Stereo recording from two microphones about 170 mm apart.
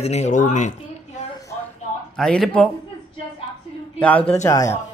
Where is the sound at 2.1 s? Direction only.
5° left (ahead or behind).